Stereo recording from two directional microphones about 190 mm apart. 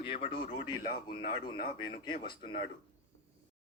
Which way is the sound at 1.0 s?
25° left (ahead or behind).